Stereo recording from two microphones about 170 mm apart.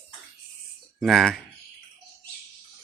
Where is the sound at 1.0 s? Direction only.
Centre (ahead or behind).